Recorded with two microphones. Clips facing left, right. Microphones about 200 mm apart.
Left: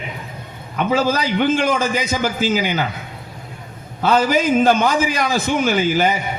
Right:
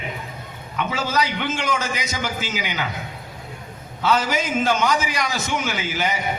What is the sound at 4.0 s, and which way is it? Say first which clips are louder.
A man's voice: left 5 dB; 50° left (ahead or behind).